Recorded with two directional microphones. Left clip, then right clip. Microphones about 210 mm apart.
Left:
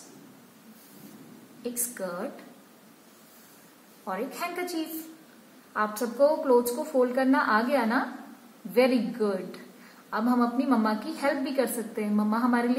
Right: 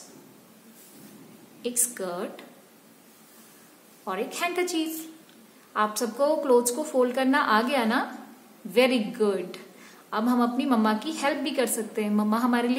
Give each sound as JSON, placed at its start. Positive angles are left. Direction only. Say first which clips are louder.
{"t": 1.6, "sound": "a woman's voice", "louder": "right 3 dB", "side_deg": -20}
{"t": 4.0, "sound": "a woman's voice", "louder": "right 3 dB", "side_deg": -20}
{"t": 5.7, "sound": "a woman's voice", "louder": "right 3 dB", "side_deg": -20}